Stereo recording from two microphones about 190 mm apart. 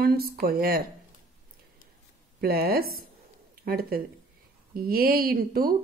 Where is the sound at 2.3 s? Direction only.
55° right (ahead or behind).